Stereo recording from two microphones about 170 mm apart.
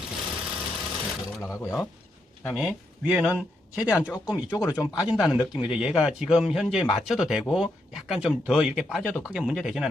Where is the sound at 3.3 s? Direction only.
5° right (ahead or behind).